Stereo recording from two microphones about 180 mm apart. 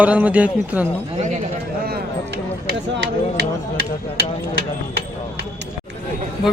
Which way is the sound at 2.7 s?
75° right (ahead or behind).